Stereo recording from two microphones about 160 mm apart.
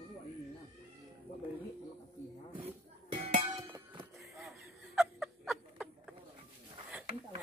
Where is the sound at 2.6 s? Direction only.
45° right (ahead or behind).